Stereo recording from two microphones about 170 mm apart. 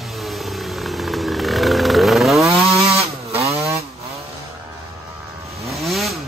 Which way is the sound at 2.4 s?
20° right (ahead or behind).